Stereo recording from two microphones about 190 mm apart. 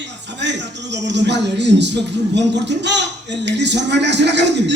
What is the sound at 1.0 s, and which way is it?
Speech, 65° right (ahead or behind).